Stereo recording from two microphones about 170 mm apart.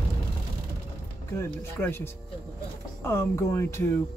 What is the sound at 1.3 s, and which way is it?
Speech, 15° left (ahead or behind).